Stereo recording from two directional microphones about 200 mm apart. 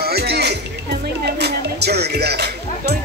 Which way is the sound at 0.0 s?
55° right (ahead or behind).